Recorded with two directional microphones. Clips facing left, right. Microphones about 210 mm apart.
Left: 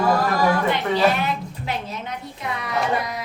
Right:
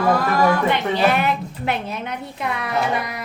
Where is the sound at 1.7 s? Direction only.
60° right (ahead or behind).